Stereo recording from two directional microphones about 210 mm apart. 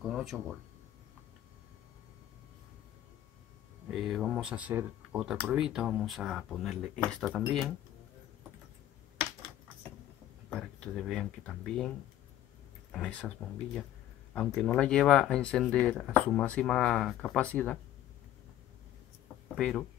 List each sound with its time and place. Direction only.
0.0 s a sound: centre (ahead or behind)
3.9 s speech: centre (ahead or behind)
10.5 s speech: 5° left (ahead or behind)
12.9 s speech: 5° left (ahead or behind)
14.3 s speech: 5° left (ahead or behind)
19.5 s speech: centre (ahead or behind)